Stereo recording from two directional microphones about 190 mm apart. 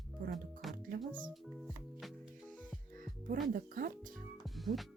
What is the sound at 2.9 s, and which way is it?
Speech, 50° right (ahead or behind).